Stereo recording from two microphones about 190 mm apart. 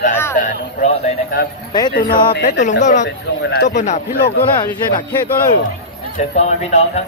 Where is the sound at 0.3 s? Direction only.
40° left (ahead or behind).